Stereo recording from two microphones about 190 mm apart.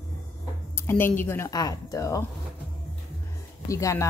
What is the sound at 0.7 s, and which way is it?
Speech, 10° left (ahead or behind).